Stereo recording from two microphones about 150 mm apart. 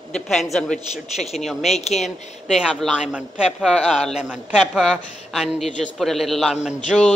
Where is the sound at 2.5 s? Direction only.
Centre (ahead or behind).